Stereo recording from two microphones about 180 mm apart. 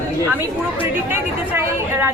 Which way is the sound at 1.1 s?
10° right (ahead or behind).